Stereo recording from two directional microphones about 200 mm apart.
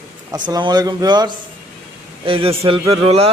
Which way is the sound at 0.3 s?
20° right (ahead or behind).